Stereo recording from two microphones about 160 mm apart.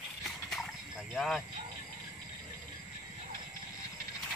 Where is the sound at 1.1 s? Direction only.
Centre (ahead or behind).